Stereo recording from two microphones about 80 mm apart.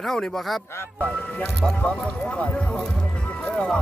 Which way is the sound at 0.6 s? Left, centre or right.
Left.